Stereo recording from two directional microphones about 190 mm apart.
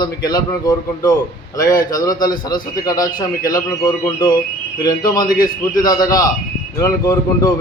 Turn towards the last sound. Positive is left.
turn(degrees=20)  # may be behind; listen again after turning